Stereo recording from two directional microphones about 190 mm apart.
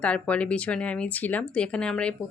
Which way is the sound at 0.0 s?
5° left (ahead or behind).